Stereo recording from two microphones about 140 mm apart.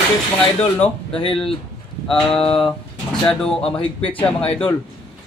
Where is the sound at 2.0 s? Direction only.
5° left (ahead or behind).